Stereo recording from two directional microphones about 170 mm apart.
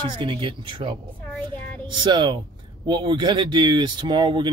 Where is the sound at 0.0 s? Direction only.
30° right (ahead or behind).